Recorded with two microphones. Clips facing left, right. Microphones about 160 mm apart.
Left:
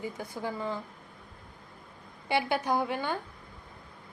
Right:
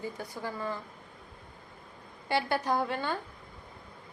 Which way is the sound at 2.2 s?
15° left (ahead or behind).